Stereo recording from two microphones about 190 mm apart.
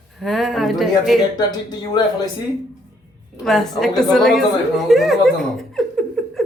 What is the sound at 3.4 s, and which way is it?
A woman's voice, centre (ahead or behind).